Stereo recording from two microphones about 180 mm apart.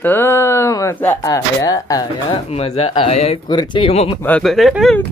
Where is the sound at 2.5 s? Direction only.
35° left (ahead or behind).